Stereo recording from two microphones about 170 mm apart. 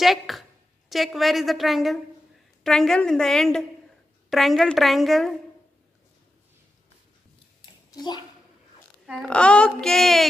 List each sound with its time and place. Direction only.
0.0 s a woman's voice: centre (ahead or behind)
7.9 s speech: 25° left (ahead or behind)
9.0 s speech: centre (ahead or behind)